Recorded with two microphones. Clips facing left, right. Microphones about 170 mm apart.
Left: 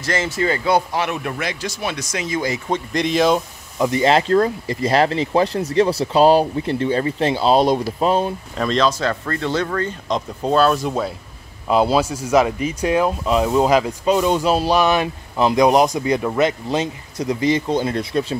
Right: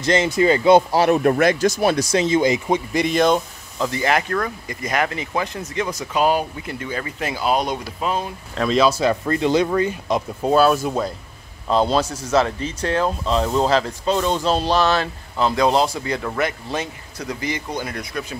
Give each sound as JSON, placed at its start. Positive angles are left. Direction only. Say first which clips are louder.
{"t": 0.0, "sound": "speech", "louder": "right 4 dB", "side_deg": -20}
{"t": 0.9, "sound": "speech", "louder": "right 7 dB", "side_deg": -35}
{"t": 2.9, "sound": "speech", "louder": "left 1 dB", "side_deg": 0}
{"t": 3.7, "sound": "speech", "louder": "left 5 dB", "side_deg": 20}
{"t": 8.5, "sound": "speech", "louder": "right 2 dB", "side_deg": -5}